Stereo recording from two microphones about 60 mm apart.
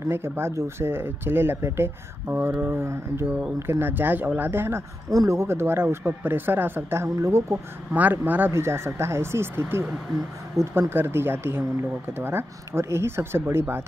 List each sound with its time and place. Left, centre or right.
0.0 s speech: right
5.1 s speech: right
5.5 s speech: right
7.2 s speech: right
7.9 s speech: right
8.5 s speech: right